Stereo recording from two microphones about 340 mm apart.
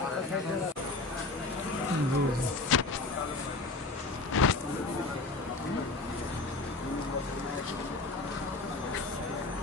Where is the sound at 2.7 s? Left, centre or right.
Left.